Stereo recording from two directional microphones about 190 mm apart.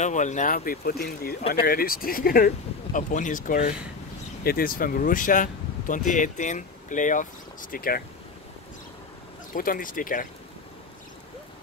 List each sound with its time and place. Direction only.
0.0 s speech: 40° left (ahead or behind)
9.5 s speech: 45° left (ahead or behind)